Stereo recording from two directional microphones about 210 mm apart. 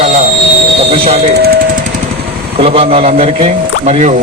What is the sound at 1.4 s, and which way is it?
Jackhammer, 50° right (ahead or behind).